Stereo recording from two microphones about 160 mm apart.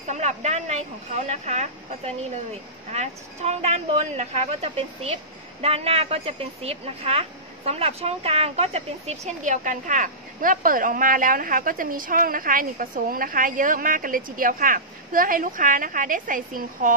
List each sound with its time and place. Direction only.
0.0 s speech: 45° right (ahead or behind)